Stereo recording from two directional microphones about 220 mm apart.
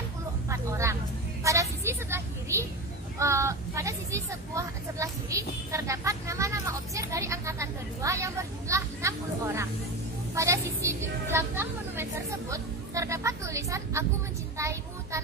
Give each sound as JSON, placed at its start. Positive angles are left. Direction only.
{"t": 0.5, "sound": "vehicle", "side_deg": -15}
{"t": 3.2, "sound": "a woman's voice", "side_deg": -15}
{"t": 14.6, "sound": "a sound", "side_deg": -15}